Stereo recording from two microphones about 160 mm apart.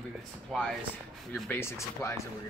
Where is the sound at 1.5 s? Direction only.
15° left (ahead or behind).